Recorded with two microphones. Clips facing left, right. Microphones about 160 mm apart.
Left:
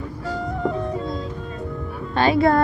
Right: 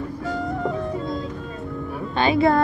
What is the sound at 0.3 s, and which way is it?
Music, centre (ahead or behind).